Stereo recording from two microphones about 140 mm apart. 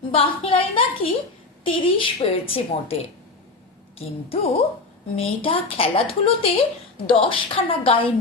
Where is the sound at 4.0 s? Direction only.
45° left (ahead or behind).